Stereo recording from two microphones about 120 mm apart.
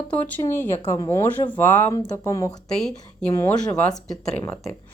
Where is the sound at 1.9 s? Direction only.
35° left (ahead or behind).